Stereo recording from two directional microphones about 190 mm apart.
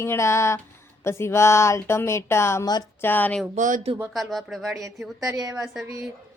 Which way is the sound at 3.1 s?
10° left (ahead or behind).